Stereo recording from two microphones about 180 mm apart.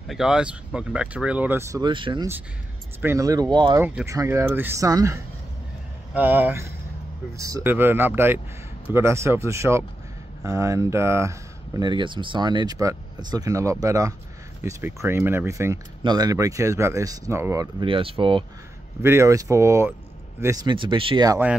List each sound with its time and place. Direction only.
0.1 s speech: 5° right (ahead or behind); by 2.2 s 25° right (ahead or behind)
3.0 s speech: 15° right (ahead or behind)
3.8 s speech: 15° right (ahead or behind); by 18.4 s 30° right (ahead or behind)
19.0 s speech: 15° right (ahead or behind)